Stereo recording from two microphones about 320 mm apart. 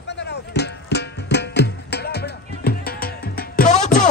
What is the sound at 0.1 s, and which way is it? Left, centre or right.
Music, left.